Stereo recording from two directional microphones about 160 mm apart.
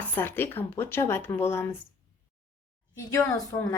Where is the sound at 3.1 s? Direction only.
20° left (ahead or behind).